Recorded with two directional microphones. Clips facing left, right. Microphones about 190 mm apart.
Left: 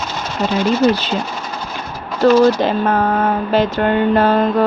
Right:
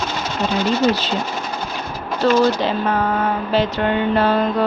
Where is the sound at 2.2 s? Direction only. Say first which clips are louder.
Left 5 dB; 50° left (ahead or behind).